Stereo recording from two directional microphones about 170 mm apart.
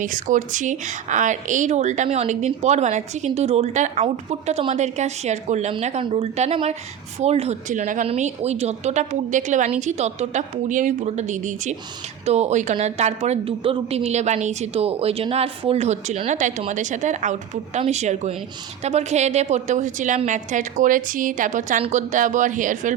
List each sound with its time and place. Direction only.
0.0 s a woman's voice: 50° right (ahead or behind)